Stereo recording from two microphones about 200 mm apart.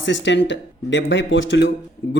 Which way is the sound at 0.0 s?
65° left (ahead or behind).